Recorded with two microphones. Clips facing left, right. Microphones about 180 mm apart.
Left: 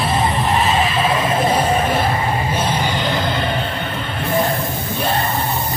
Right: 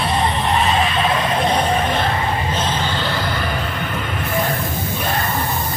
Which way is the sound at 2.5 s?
10° left (ahead or behind).